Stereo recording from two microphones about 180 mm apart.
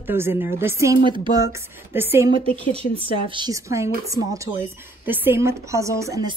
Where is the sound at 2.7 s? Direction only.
30° right (ahead or behind).